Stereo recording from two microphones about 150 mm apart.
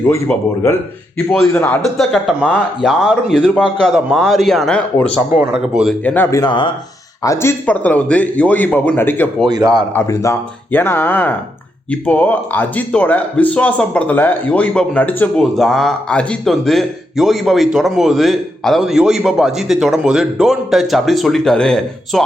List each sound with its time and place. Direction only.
1.3 s speech: 5° left (ahead or behind)
2.0 s speech: centre (ahead or behind)
6.3 s speech: 30° left (ahead or behind)
7.3 s speech: 15° left (ahead or behind)
9.5 s speech: 25° right (ahead or behind)
9.9 s speech: 20° left (ahead or behind)